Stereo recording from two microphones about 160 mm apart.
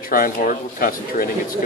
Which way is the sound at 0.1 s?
60° left (ahead or behind).